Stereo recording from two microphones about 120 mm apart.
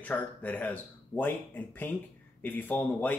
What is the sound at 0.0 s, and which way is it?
Speech, 15° left (ahead or behind).